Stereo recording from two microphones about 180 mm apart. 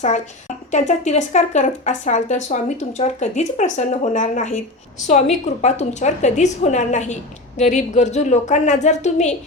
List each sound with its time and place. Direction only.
0.7 s speech: 40° left (ahead or behind)